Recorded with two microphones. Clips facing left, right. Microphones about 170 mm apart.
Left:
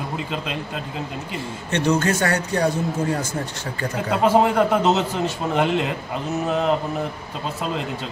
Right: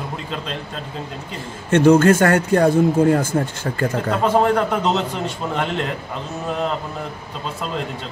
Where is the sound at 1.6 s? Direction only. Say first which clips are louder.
Right 8 dB; 50° right (ahead or behind).